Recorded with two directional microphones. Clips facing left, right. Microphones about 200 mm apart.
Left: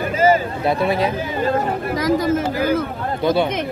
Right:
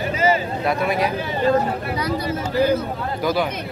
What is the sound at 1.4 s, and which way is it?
Speech, 45° left (ahead or behind).